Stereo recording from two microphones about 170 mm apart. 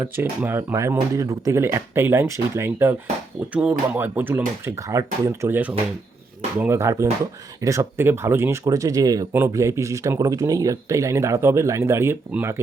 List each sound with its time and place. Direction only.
0.0 s speech: 15° right (ahead or behind)